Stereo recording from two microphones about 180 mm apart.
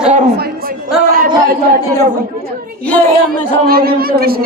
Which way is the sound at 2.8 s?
10° left (ahead or behind).